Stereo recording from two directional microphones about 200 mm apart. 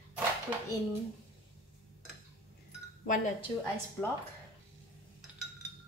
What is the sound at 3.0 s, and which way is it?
Speech, 40° left (ahead or behind).